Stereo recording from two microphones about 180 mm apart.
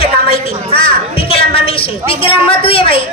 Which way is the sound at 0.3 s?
30° left (ahead or behind).